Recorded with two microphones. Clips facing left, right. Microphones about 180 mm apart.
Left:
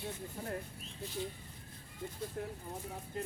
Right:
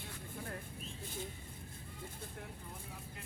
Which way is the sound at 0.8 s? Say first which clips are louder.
Left 4 dB; 50° right (ahead or behind).